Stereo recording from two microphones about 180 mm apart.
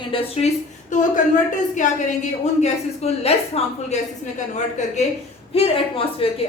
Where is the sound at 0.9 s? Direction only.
45° left (ahead or behind).